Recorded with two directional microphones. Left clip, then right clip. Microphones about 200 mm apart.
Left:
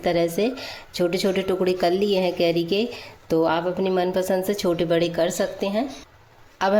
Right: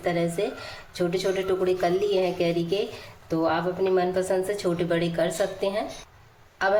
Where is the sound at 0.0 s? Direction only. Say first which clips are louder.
Left 4 dB; 45° left (ahead or behind).